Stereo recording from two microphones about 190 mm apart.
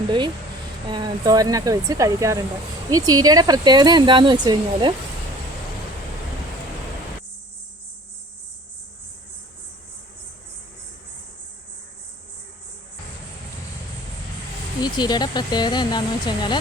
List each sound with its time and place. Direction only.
0.9 s speech: 25° right (ahead or behind)
14.8 s speech: 20° left (ahead or behind)